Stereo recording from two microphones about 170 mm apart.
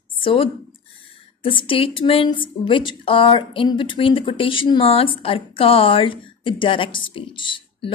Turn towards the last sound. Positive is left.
turn(degrees=30)  # may be behind; listen again after turning